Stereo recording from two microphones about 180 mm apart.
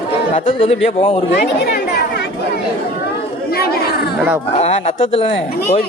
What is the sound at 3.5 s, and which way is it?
Chatter, 60° left (ahead or behind).